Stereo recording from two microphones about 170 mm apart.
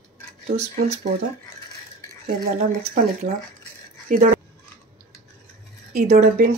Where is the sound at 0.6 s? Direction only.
40° right (ahead or behind).